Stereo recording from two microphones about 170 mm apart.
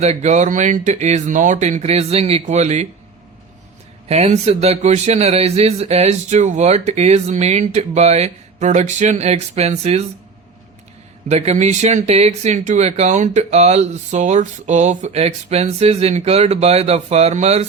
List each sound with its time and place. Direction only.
0.0 s speech: 40° right (ahead or behind)
4.1 s speech: 40° right (ahead or behind)
11.3 s speech: 40° right (ahead or behind)